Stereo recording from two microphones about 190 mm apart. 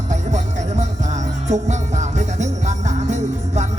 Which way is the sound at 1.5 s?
40° right (ahead or behind).